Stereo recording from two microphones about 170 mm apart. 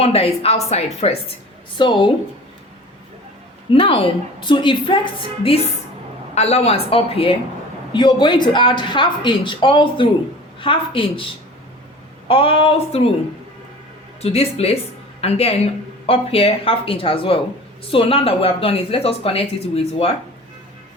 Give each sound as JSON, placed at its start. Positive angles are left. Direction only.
{"t": 0.0, "sound": "speech", "side_deg": 35}
{"t": 1.8, "sound": "speech", "side_deg": 30}
{"t": 3.7, "sound": "speech", "side_deg": 30}
{"t": 12.3, "sound": "speech", "side_deg": 30}
{"t": 14.2, "sound": "speech", "side_deg": 35}